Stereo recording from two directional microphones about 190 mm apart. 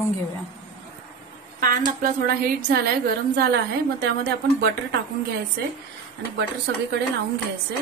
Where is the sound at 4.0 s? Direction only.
60° right (ahead or behind).